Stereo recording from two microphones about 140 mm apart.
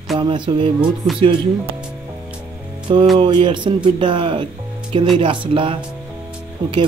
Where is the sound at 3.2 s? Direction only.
35° right (ahead or behind).